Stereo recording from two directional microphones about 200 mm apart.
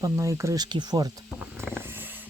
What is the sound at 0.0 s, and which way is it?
Speech, 15° right (ahead or behind).